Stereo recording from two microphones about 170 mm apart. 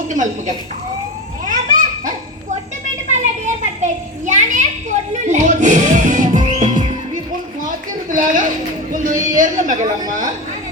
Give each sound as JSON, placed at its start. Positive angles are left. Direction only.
{"t": 0.1, "sound": "speech", "side_deg": -45}
{"t": 1.5, "sound": "children playing", "side_deg": -50}
{"t": 3.4, "sound": "children playing", "side_deg": -45}
{"t": 7.6, "sound": "a sound", "side_deg": -50}